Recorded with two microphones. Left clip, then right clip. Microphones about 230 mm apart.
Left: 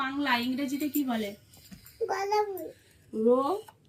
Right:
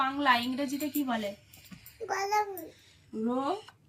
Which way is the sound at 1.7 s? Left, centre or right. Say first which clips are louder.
Even; centre.